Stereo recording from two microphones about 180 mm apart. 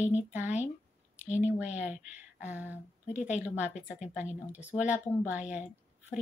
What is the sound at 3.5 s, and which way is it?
A woman's voice, 5° right (ahead or behind).